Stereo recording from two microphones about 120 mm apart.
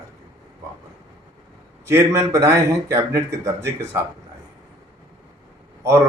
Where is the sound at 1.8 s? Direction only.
25° right (ahead or behind).